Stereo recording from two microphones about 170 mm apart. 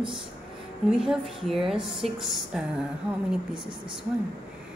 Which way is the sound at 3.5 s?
30° right (ahead or behind).